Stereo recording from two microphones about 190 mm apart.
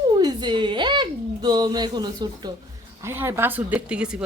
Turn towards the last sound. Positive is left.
turn(degrees=-5)  # may be behind; listen again after turning